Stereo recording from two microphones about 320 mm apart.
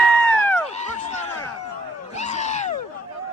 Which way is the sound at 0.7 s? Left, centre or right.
Left.